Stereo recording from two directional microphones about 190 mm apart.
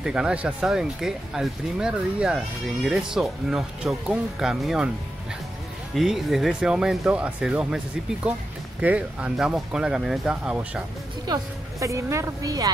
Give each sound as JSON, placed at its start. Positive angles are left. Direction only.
{"t": 0.0, "sound": "speech", "side_deg": -5}
{"t": 5.9, "sound": "speech", "side_deg": 0}
{"t": 8.8, "sound": "speech", "side_deg": -5}
{"t": 11.3, "sound": "a woman's voice", "side_deg": -20}